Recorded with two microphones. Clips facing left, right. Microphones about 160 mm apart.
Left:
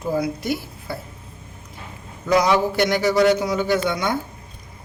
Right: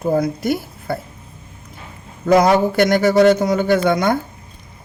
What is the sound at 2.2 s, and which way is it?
Speech, 50° right (ahead or behind).